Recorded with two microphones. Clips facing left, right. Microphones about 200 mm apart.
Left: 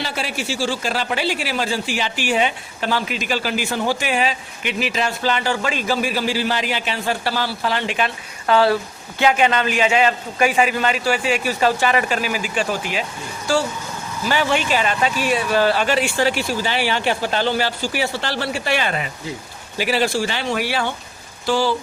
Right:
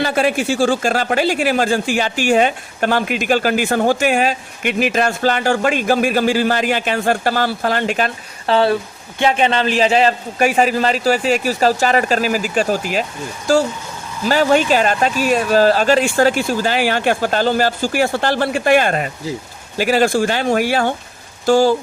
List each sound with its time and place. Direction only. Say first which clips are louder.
0.0 s speech: right 9 dB; 50° right (ahead or behind)
8.4 s a man's voice: right 1 dB; 25° right (ahead or behind); by 13.1 s 40° right (ahead or behind)
14.3 s speech: right 6 dB; 40° right (ahead or behind)